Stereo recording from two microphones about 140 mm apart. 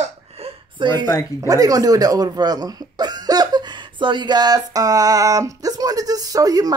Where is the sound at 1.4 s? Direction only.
25° right (ahead or behind).